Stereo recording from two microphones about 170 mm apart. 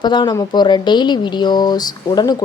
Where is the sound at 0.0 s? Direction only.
25° left (ahead or behind).